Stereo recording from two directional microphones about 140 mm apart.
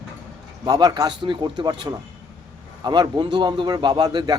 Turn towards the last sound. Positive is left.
turn(degrees=-30)  # may be behind; listen again after turning